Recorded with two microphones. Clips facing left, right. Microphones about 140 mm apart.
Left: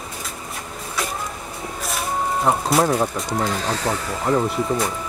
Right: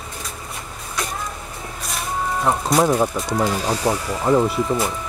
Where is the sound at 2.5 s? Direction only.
5° left (ahead or behind).